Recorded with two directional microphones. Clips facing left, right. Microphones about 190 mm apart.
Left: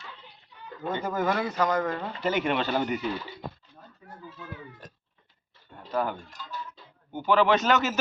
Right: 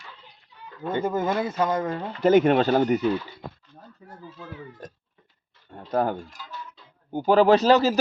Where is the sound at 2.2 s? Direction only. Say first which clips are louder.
Right 10 dB; 45° right (ahead or behind).